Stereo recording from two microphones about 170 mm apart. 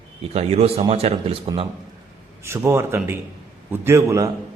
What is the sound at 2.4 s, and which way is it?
A man's voice, 15° right (ahead or behind).